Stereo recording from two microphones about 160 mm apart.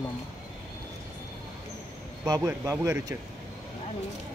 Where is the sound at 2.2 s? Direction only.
20° right (ahead or behind).